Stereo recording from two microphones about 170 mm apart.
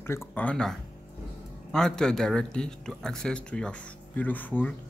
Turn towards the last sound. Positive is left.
turn(degrees=10)  # may be behind; listen again after turning